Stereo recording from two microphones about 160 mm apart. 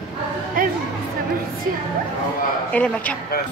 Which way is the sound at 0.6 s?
60° right (ahead or behind).